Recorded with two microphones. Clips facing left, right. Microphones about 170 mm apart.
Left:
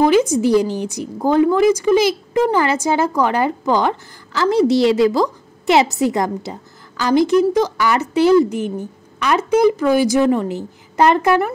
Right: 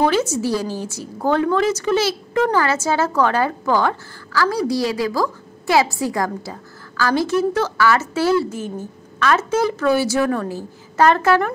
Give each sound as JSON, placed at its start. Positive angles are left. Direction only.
{"t": 0.0, "sound": "a woman's voice", "side_deg": 15}